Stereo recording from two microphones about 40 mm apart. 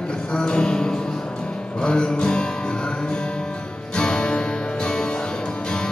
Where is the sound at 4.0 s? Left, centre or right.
Centre.